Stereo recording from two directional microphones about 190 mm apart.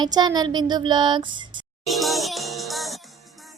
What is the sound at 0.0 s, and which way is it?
A woman's voice, 20° right (ahead or behind).